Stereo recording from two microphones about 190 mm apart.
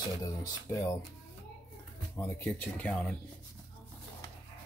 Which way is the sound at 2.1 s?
10° left (ahead or behind).